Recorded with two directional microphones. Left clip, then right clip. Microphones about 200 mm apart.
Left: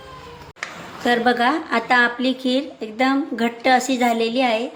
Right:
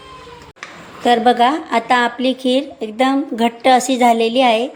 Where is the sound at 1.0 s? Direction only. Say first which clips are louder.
Right 5 dB; 15° right (ahead or behind).